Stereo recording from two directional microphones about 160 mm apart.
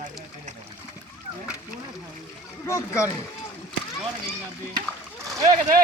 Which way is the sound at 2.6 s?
15° left (ahead or behind).